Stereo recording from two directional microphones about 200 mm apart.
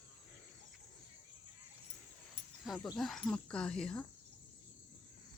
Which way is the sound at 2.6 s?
Centre (ahead or behind).